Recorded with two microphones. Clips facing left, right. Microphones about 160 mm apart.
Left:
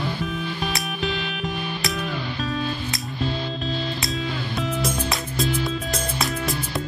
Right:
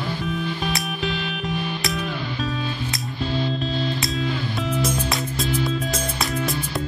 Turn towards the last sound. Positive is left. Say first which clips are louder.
# right 1 dB
turn(degrees=0)  # may be behind; listen again after turning